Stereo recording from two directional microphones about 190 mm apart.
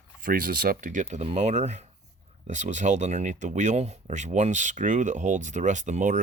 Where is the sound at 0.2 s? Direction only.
45° right (ahead or behind).